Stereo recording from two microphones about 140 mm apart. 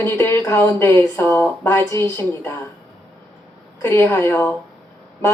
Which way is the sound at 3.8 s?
15° left (ahead or behind).